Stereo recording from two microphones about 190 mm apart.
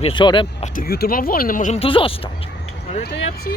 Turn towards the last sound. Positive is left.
turn(degrees=55)  # may be behind; listen again after turning